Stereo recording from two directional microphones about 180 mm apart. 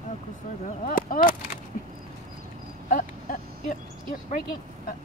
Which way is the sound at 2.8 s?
50° left (ahead or behind).